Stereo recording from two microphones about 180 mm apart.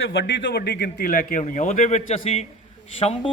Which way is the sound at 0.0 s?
90° left.